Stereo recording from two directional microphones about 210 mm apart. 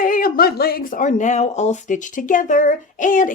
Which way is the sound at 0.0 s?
40° left (ahead or behind).